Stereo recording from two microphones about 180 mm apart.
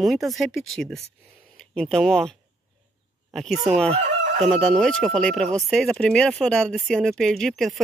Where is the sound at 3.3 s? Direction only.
Centre (ahead or behind).